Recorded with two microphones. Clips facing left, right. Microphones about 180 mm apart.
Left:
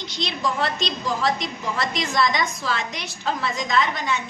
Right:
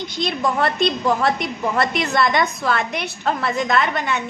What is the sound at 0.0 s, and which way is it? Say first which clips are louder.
A woman's voice: right 5 dB; 50° right (ahead or behind).